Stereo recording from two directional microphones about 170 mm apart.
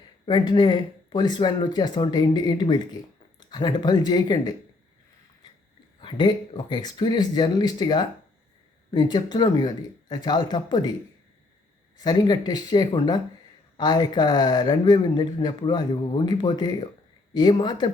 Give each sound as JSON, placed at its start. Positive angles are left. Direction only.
{"t": 0.3, "sound": "speech", "side_deg": 25}
{"t": 6.0, "sound": "speech", "side_deg": 25}
{"t": 11.9, "sound": "speech", "side_deg": 25}